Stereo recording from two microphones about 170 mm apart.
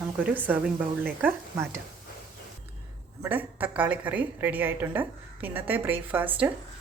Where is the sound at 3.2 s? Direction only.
10° right (ahead or behind).